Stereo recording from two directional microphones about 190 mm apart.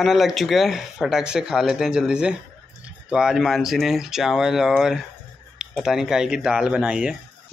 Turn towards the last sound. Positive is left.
turn(degrees=-5)  # may be behind; listen again after turning